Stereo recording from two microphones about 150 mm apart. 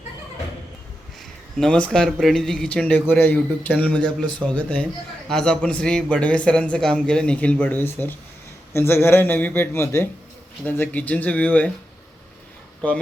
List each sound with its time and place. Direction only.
1.5 s a man's voice: 5° left (ahead or behind)